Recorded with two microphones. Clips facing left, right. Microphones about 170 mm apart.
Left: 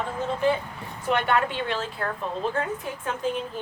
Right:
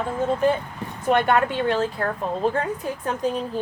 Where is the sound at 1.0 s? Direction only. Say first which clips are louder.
Right 4 dB; 45° right (ahead or behind).